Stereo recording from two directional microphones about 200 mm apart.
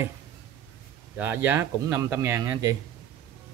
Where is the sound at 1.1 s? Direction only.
10° right (ahead or behind).